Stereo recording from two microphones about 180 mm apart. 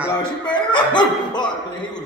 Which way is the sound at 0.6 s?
25° left (ahead or behind).